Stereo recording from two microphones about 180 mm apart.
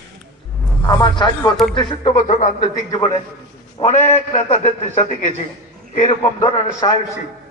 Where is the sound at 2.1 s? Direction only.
45° left (ahead or behind).